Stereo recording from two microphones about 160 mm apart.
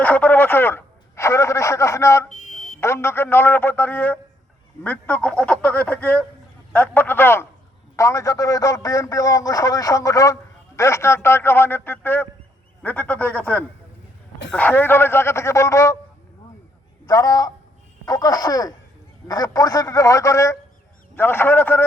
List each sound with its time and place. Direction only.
0.0 s a man's voice: 10° left (ahead or behind)
17.1 s a man's voice: 20° left (ahead or behind)